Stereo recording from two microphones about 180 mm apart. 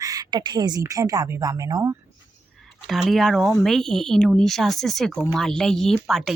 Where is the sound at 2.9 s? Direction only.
Centre (ahead or behind).